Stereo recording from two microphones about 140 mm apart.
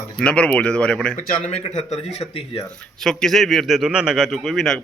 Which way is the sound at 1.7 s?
55° left (ahead or behind).